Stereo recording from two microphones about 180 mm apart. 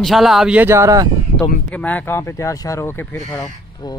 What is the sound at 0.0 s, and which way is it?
Speech, centre (ahead or behind).